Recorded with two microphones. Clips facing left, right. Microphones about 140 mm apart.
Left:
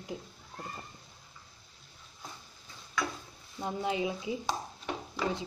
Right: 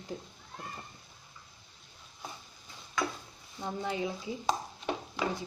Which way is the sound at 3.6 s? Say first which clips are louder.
Left 2 dB; 15° left (ahead or behind).